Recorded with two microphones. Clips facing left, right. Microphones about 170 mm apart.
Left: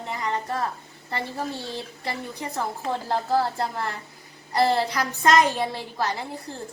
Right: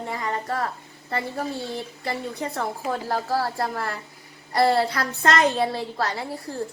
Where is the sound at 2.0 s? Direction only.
20° left (ahead or behind).